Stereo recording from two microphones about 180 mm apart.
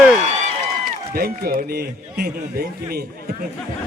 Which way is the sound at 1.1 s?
55° right (ahead or behind).